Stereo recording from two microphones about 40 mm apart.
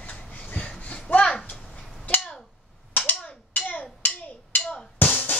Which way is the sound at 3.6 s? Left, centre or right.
Left.